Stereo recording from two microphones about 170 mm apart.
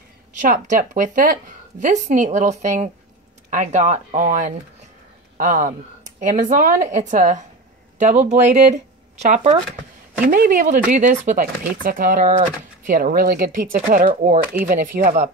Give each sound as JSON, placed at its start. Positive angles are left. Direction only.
{"t": 0.4, "sound": "speech", "side_deg": -50}
{"t": 10.2, "sound": "speech", "side_deg": -55}